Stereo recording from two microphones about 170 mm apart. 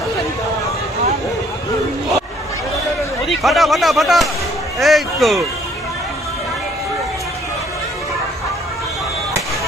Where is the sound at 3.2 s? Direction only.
Centre (ahead or behind).